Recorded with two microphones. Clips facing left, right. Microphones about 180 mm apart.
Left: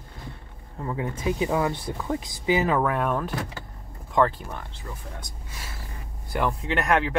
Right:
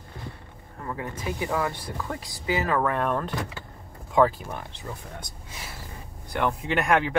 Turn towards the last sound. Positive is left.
turn(degrees=0)  # may be behind; listen again after turning